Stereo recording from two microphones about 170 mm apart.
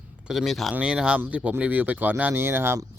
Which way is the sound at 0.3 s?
Centre (ahead or behind).